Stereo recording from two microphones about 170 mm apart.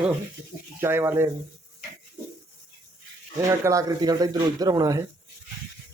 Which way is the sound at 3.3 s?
15° right (ahead or behind).